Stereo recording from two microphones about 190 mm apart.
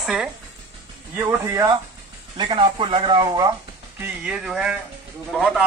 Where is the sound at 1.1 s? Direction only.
15° right (ahead or behind).